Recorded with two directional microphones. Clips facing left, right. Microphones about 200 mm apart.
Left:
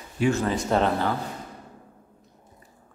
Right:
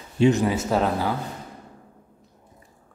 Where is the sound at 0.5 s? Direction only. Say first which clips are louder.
Even; 5° right (ahead or behind).